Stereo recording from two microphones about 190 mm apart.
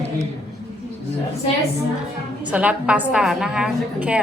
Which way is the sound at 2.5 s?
5° right (ahead or behind).